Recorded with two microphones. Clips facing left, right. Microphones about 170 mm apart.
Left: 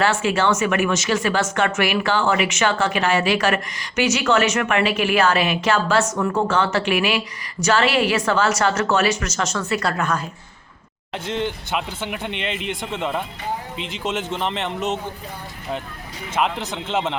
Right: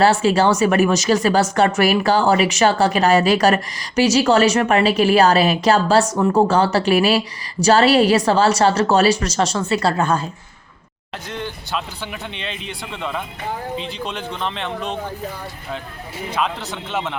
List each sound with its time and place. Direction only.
0.0 s speech: 35° right (ahead or behind)
11.3 s a man's voice: 20° left (ahead or behind)
12.3 s a man's voice: 65° left (ahead or behind)
12.8 s a man's voice: 20° left (ahead or behind)
16.3 s a man's voice: 20° left (ahead or behind)